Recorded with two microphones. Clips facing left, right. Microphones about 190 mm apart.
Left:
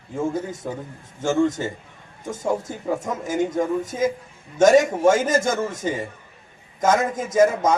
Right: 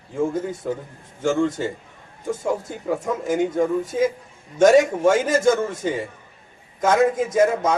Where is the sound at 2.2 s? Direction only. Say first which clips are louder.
Right 1 dB; 45° left (ahead or behind).